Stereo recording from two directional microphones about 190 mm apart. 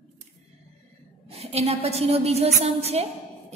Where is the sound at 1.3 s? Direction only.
30° right (ahead or behind).